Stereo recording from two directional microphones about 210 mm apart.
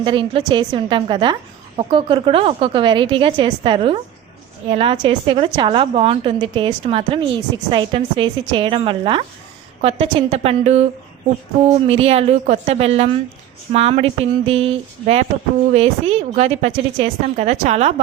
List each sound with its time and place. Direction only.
0.0 s a woman's voice: 25° right (ahead or behind)